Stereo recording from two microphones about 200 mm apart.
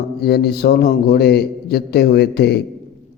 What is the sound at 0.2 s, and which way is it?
Speech, 50° left (ahead or behind).